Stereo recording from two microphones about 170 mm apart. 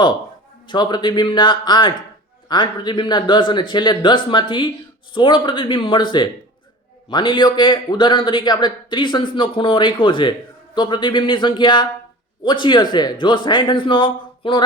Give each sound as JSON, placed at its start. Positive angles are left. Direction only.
{"t": 0.7, "sound": "a man's voice", "side_deg": 25}